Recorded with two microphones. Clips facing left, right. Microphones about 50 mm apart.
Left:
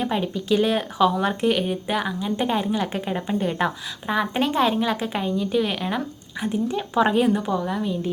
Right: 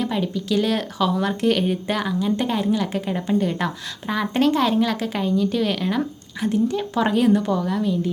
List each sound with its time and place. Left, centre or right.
0.0 s a woman's voice: left
3.1 s a woman's voice: centre
3.6 s a woman's voice: left